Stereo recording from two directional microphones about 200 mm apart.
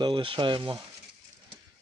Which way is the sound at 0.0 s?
25° right (ahead or behind).